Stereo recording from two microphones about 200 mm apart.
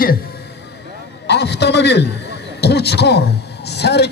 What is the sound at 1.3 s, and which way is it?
A man's voice, 60° left (ahead or behind).